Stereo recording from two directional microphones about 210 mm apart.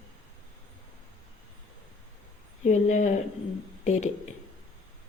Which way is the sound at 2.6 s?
35° left (ahead or behind).